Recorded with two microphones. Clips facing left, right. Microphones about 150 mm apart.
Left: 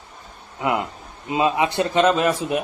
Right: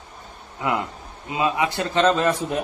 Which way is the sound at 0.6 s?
20° left (ahead or behind).